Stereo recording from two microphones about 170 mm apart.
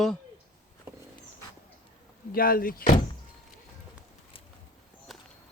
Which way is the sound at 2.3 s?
60° left (ahead or behind).